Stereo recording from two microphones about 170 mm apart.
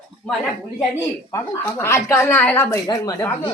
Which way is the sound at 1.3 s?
15° left (ahead or behind).